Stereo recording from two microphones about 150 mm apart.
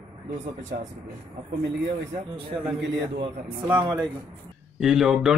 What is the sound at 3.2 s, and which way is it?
Speech, 30° right (ahead or behind).